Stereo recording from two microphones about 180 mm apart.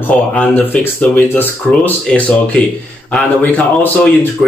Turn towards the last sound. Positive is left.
turn(degrees=5)  # may be behind; listen again after turning